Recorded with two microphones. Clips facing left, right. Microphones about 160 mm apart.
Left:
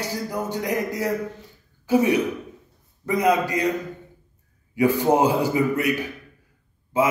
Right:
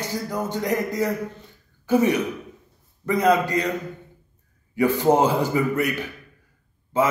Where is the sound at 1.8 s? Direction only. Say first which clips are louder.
Even; 10° left (ahead or behind).